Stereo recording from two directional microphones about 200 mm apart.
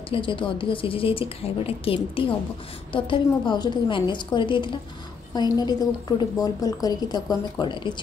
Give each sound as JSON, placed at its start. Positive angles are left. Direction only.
{"t": 0.1, "sound": "a woman's voice", "side_deg": 25}